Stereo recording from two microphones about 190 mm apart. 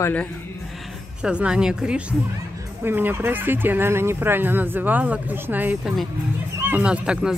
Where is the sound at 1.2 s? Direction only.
5° right (ahead or behind).